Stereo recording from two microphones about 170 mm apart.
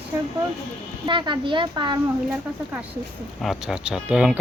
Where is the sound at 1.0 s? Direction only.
30° right (ahead or behind).